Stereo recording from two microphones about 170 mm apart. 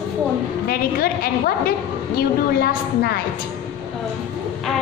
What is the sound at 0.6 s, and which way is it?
A woman's voice, 60° left (ahead or behind).